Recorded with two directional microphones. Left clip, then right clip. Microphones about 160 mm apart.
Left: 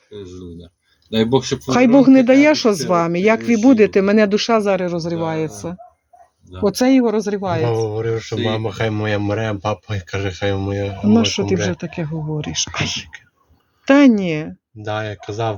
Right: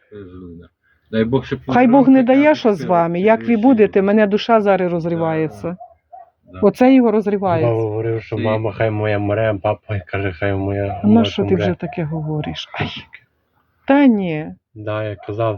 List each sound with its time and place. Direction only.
1.1 s speech: 25° left (ahead or behind)
1.6 s speech: 10° right (ahead or behind)
4.9 s speech: 30° right (ahead or behind)
11.1 s speech: 15° right (ahead or behind)